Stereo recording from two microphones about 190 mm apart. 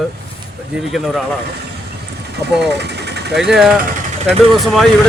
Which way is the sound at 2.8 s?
60° right (ahead or behind).